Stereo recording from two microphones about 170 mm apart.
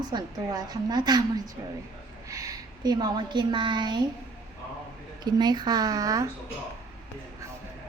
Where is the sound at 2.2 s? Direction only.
20° right (ahead or behind).